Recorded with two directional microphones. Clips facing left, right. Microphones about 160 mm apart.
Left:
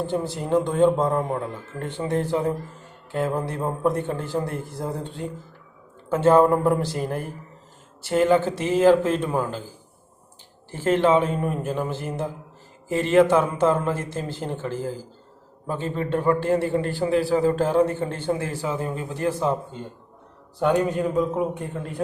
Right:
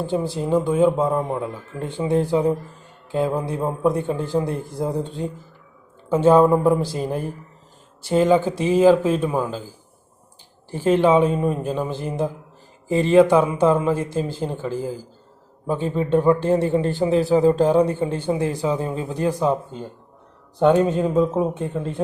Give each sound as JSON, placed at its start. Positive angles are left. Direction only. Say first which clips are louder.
{"t": 0.0, "sound": "a man's voice", "louder": "right 3 dB", "side_deg": -10}
{"t": 10.7, "sound": "a man's voice", "louder": "right 3 dB", "side_deg": -15}
{"t": 20.8, "sound": "a man's voice", "louder": "right 4 dB", "side_deg": -20}